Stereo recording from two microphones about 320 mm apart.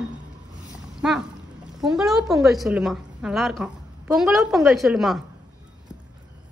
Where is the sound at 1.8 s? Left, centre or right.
Centre.